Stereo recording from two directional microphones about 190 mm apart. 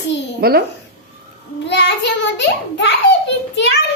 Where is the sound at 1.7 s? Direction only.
65° left (ahead or behind).